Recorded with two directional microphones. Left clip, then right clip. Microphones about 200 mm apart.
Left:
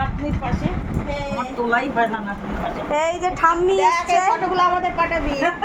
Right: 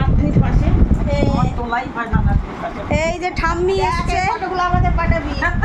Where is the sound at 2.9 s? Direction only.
10° right (ahead or behind).